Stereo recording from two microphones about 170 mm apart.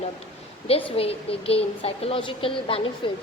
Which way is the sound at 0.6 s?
35° left (ahead or behind).